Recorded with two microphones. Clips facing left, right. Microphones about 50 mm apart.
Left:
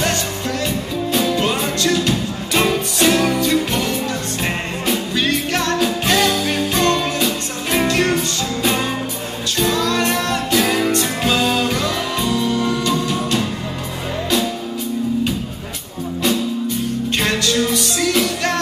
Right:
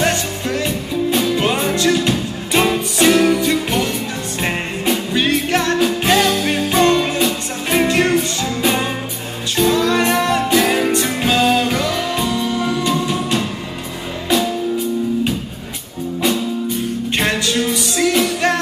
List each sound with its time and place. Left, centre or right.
0.0 s music: centre
6.0 s music: centre
17.1 s music: centre